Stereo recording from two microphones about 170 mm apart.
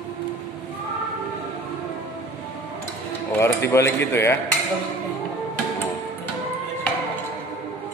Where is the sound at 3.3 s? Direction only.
15° left (ahead or behind).